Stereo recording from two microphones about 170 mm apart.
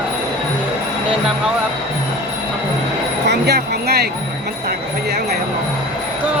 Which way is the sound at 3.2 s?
75° right (ahead or behind).